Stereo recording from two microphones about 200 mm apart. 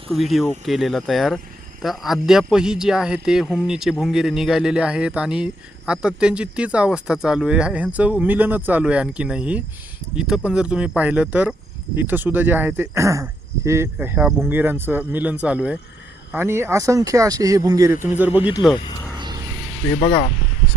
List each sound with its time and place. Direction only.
0.1 s a man's voice: centre (ahead or behind)
19.1 s a sound: 20° right (ahead or behind)
20.0 s speech: 25° left (ahead or behind)